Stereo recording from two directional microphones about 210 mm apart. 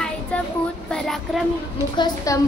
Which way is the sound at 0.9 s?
Centre (ahead or behind).